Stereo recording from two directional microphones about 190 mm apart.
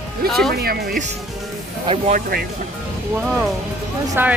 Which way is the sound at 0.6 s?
50° right (ahead or behind).